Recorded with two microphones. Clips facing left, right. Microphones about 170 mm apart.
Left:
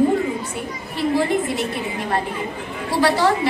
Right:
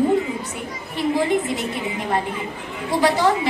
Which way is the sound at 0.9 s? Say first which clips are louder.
Even; 20° right (ahead or behind).